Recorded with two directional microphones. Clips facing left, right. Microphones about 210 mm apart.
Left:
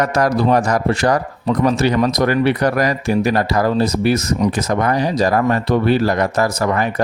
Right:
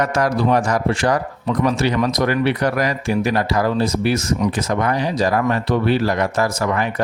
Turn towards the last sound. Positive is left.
turn(degrees=40)  # may be behind; listen again after turning